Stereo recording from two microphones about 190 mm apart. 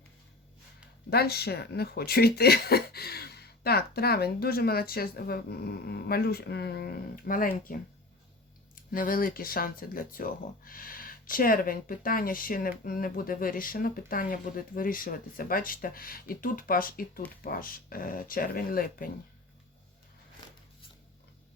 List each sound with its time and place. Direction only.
1.1 s speech: 55° left (ahead or behind)